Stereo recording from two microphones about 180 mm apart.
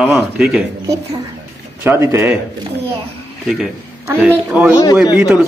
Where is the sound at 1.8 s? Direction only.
15° right (ahead or behind).